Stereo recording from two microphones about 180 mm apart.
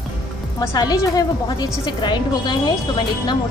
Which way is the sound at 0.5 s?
20° left (ahead or behind).